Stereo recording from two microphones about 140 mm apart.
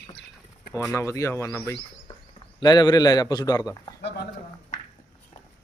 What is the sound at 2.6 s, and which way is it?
A man's voice, 30° left (ahead or behind).